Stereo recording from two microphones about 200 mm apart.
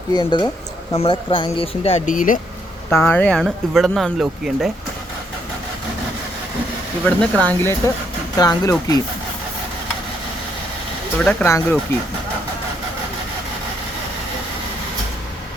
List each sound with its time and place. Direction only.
0.2 s speech: 20° left (ahead or behind); by 2.4 s 40° left (ahead or behind)
2.9 s speech: 10° left (ahead or behind)
7.0 s speech: 5° left (ahead or behind)
11.2 s speech: 5° left (ahead or behind)